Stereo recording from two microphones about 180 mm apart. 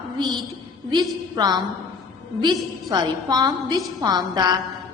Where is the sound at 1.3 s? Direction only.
20° right (ahead or behind).